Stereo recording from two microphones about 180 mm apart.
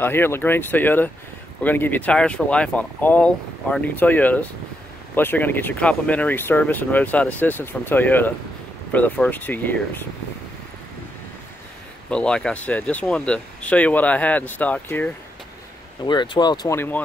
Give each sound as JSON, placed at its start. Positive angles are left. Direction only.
{"t": 0.0, "sound": "speech", "side_deg": 10}
{"t": 12.1, "sound": "speech", "side_deg": 5}
{"t": 16.0, "sound": "speech", "side_deg": 25}